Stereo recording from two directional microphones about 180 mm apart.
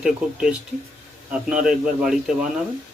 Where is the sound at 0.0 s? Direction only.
5° right (ahead or behind).